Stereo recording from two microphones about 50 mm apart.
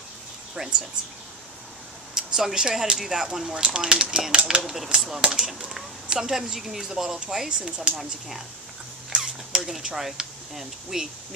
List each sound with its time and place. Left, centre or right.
0.6 s speech: centre
2.1 s speech: centre
9.1 s a sound: centre
9.7 s speech: centre